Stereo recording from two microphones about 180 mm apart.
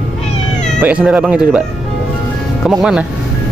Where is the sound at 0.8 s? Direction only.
5° right (ahead or behind).